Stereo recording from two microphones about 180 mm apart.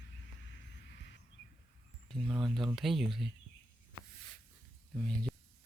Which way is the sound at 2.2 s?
5° right (ahead or behind).